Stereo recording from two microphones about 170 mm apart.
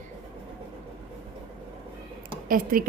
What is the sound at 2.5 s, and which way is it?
Speech, 55° right (ahead or behind).